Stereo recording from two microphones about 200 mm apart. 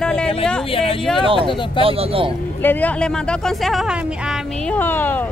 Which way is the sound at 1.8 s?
30° right (ahead or behind).